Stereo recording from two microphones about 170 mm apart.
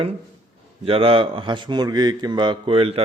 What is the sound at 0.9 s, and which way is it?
A man's voice, 35° right (ahead or behind).